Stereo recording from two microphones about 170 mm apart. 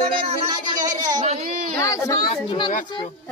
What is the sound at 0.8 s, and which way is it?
Speech, 20° right (ahead or behind).